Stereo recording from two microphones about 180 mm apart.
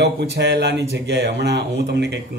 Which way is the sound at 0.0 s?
65° right (ahead or behind).